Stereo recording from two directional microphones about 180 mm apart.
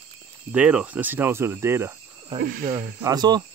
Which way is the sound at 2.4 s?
50° right (ahead or behind).